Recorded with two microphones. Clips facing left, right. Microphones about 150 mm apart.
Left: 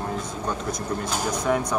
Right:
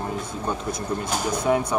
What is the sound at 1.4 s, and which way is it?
Speech, 10° right (ahead or behind).